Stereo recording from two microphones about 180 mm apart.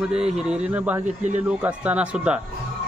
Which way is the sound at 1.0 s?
40° right (ahead or behind).